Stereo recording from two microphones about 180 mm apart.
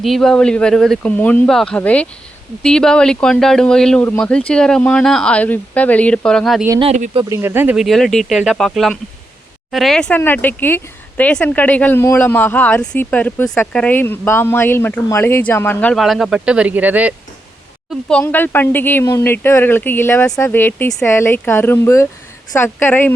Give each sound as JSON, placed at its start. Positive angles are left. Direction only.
{"t": 0.0, "sound": "speech", "side_deg": 0}
{"t": 6.8, "sound": "speech", "side_deg": -45}
{"t": 7.3, "sound": "speech", "side_deg": -15}
{"t": 18.1, "sound": "speech", "side_deg": 10}